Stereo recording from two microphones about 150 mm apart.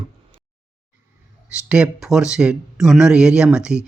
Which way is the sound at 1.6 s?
5° right (ahead or behind).